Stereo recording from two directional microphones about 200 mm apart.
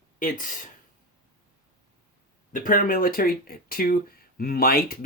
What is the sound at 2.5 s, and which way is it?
Speech, 45° left (ahead or behind).